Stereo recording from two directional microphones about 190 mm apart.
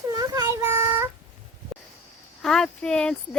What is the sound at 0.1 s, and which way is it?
Child singing, 20° right (ahead or behind).